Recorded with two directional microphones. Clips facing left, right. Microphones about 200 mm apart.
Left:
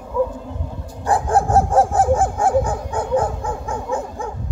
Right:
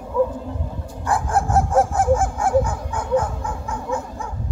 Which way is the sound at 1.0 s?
35° left (ahead or behind).